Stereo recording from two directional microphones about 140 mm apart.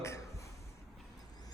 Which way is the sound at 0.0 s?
20° left (ahead or behind).